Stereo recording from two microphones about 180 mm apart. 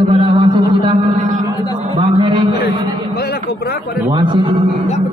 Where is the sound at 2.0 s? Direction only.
25° right (ahead or behind).